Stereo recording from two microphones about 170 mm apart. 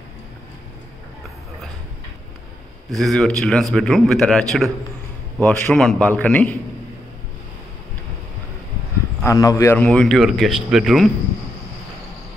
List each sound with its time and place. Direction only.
2.9 s a man's voice: centre (ahead or behind)
9.2 s speech: 20° left (ahead or behind)
9.8 s a man's voice: 5° left (ahead or behind)